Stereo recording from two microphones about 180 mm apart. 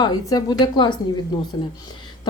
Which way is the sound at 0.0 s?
20° left (ahead or behind).